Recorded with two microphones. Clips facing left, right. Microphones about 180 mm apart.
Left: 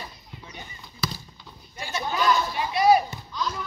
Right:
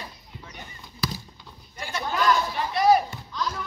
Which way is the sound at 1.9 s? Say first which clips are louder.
Even; 15° left (ahead or behind).